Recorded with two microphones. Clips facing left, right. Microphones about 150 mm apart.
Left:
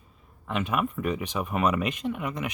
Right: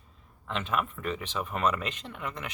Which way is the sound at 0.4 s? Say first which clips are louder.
Left 4 dB; 15° left (ahead or behind).